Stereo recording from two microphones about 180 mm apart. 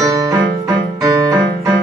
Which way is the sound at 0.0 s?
20° right (ahead or behind).